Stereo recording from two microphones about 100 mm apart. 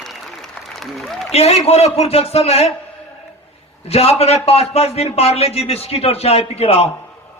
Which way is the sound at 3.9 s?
90° left.